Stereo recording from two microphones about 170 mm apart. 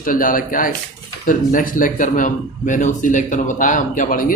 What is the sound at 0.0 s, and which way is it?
Speech, 55° left (ahead or behind).